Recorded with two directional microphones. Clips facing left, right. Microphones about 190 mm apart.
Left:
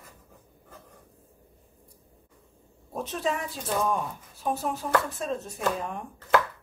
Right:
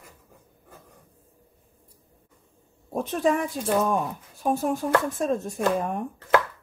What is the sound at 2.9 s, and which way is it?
Speech, 50° right (ahead or behind).